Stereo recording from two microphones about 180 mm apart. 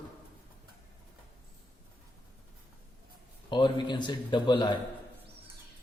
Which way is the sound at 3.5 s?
25° left (ahead or behind).